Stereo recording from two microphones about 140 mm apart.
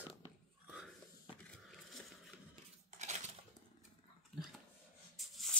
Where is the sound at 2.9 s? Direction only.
55° right (ahead or behind).